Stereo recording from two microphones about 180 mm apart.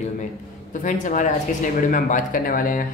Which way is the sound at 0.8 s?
45° left (ahead or behind).